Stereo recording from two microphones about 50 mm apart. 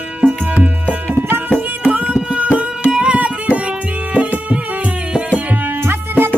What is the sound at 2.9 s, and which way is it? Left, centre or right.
Music, right.